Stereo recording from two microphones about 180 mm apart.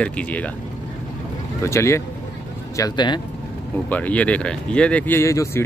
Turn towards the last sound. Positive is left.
turn(degrees=15)  # may be behind; listen again after turning